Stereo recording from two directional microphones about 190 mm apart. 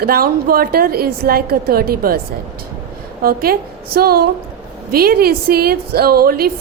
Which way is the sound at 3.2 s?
50° right (ahead or behind).